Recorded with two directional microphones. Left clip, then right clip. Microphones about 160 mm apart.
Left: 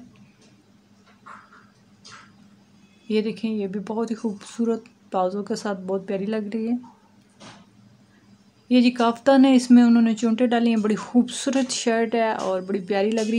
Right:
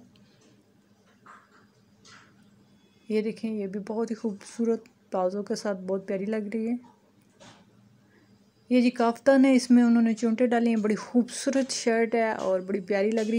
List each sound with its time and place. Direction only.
3.1 s speech: 10° right (ahead or behind)
8.6 s speech: 15° right (ahead or behind)